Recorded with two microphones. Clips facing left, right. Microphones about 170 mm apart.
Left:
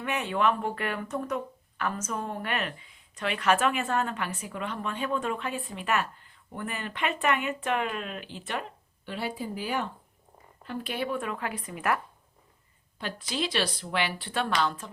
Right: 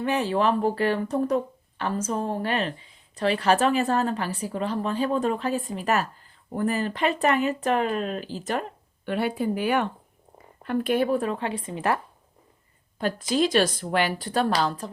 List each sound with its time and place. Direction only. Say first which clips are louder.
0.0 s a woman's voice: right 4 dB; 35° right (ahead or behind)
9.0 s a woman's voice: right 8 dB; 60° right (ahead or behind); by 11.9 s 30° right (ahead or behind)
13.0 s speech: right 9 dB; 45° right (ahead or behind)